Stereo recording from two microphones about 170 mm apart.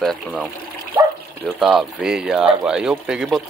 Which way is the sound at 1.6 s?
5° right (ahead or behind).